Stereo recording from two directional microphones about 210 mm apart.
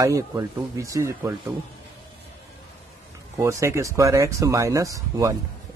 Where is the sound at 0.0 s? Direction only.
15° right (ahead or behind).